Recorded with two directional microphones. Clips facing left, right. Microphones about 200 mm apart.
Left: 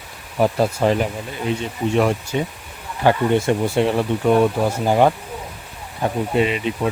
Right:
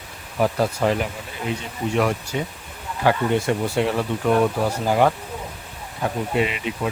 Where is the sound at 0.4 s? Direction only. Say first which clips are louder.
Left 3 dB; 25° left (ahead or behind).